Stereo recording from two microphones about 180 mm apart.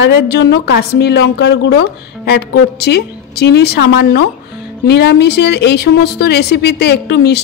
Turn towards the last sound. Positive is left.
turn(degrees=65)  # may be behind; listen again after turning